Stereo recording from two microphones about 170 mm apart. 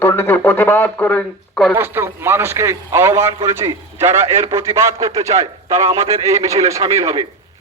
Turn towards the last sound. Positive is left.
turn(degrees=-20)  # may be behind; listen again after turning